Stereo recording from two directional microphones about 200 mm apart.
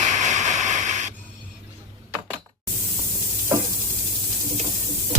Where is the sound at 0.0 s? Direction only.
35° right (ahead or behind).